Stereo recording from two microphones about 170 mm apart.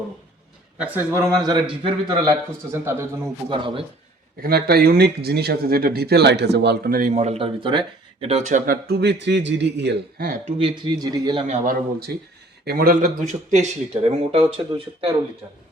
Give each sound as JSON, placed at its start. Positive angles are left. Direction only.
{"t": 0.8, "sound": "a man's voice", "side_deg": -10}
{"t": 3.5, "sound": "a man's voice", "side_deg": -30}
{"t": 4.4, "sound": "speech", "side_deg": -60}
{"t": 7.1, "sound": "speech", "side_deg": -40}
{"t": 10.4, "sound": "a man's voice", "side_deg": -30}
{"t": 11.4, "sound": "speech", "side_deg": -45}